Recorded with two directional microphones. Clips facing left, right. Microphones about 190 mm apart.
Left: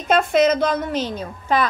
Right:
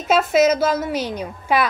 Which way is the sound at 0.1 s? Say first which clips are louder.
Right 1 dB; 5° right (ahead or behind).